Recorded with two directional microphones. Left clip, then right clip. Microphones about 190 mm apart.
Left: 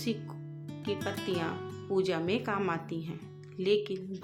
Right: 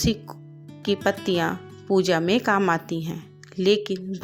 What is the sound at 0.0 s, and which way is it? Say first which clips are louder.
Speech: right 10 dB; 40° right (ahead or behind).